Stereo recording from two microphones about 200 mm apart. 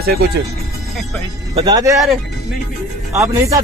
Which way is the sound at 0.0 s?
50° right (ahead or behind).